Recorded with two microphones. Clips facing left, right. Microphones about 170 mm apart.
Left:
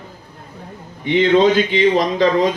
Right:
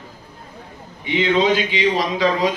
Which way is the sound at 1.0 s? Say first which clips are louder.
Left 5 dB; 50° left (ahead or behind).